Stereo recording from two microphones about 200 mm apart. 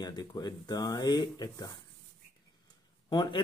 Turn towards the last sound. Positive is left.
turn(degrees=20)  # may be behind; listen again after turning